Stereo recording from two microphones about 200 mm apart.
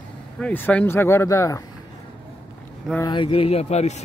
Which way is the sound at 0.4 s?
10° left (ahead or behind).